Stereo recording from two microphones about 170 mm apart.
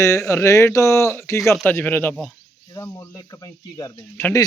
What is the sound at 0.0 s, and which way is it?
Speech, 20° left (ahead or behind).